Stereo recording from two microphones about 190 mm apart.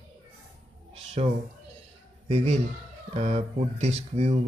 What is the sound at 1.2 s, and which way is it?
A man's voice, 35° right (ahead or behind).